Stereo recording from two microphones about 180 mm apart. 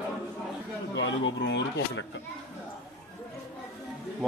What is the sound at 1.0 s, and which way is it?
Speech, 80° left.